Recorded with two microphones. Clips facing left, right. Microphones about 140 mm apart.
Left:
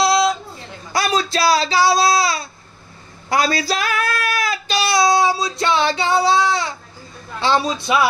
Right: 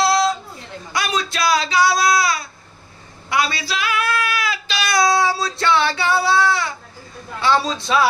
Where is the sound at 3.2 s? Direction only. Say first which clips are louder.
Left 3 dB; 40° left (ahead or behind).